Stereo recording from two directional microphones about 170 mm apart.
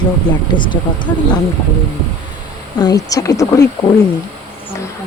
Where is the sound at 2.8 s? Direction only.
20° left (ahead or behind).